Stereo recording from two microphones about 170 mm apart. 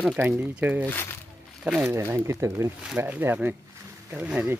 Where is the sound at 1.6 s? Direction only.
5° right (ahead or behind).